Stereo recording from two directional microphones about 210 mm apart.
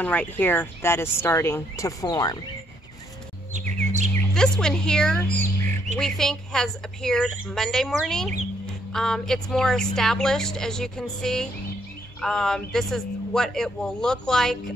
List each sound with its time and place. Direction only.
0.0 s speech: 5° left (ahead or behind)
3.5 s chirp: 35° right (ahead or behind)
4.3 s a man's voice: 5° left (ahead or behind)